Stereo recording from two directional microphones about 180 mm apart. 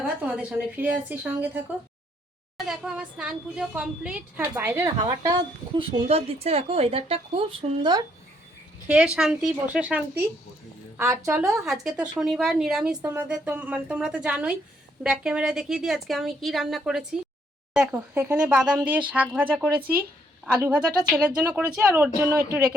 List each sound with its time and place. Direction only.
0.0 s speech: 5° right (ahead or behind); by 8.0 s 25° right (ahead or behind)
8.9 s speech: 5° right (ahead or behind)
11.6 s speech: centre (ahead or behind)